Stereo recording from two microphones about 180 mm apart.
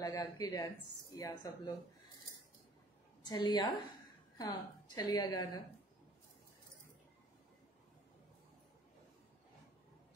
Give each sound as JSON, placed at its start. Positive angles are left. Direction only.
{"t": 0.0, "sound": "a woman's voice", "side_deg": 20}
{"t": 3.3, "sound": "a woman's voice", "side_deg": 25}